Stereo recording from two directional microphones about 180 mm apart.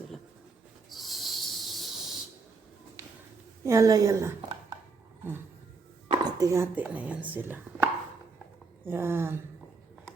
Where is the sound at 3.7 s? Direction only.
15° right (ahead or behind).